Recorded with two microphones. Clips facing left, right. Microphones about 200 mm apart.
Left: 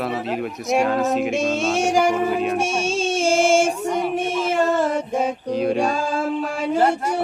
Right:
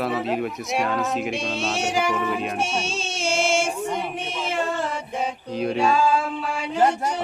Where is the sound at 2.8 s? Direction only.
50° left (ahead or behind).